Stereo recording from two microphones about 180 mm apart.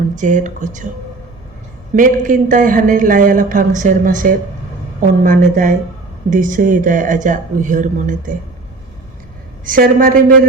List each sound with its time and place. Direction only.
0.2 s speech: 45° right (ahead or behind)
2.0 s speech: 50° right (ahead or behind)
9.6 s speech: 50° right (ahead or behind)